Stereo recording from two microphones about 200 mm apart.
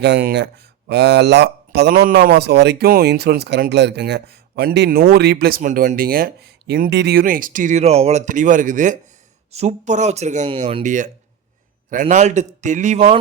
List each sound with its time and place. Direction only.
0.0 s speech: 55° right (ahead or behind); by 13.1 s 35° right (ahead or behind)